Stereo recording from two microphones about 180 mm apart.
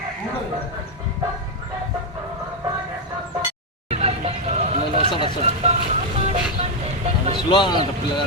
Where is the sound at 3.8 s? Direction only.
35° right (ahead or behind).